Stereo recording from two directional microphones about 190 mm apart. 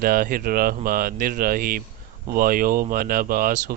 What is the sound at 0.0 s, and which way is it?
Speech, 50° right (ahead or behind).